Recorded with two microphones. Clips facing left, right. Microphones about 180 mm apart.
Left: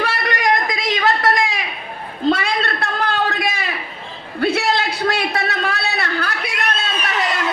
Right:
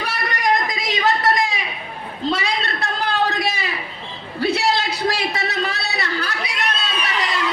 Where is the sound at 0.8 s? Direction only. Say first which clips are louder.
Left 2 dB; 50° left (ahead or behind).